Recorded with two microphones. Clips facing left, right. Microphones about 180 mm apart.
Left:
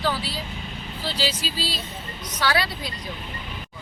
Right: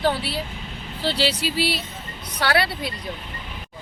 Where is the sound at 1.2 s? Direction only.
65° right (ahead or behind).